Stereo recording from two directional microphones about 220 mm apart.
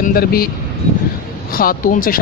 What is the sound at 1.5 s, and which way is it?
Speech, 40° left (ahead or behind).